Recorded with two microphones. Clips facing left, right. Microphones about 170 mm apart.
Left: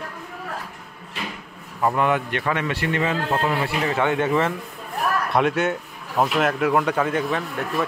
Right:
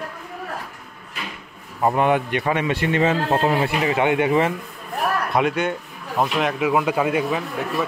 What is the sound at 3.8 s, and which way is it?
Speech, 10° right (ahead or behind).